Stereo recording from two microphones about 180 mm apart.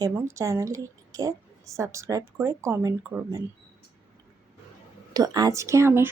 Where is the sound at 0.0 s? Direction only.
15° right (ahead or behind).